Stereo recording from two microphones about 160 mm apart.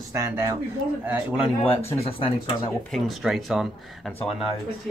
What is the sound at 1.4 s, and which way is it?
Speech, 35° left (ahead or behind).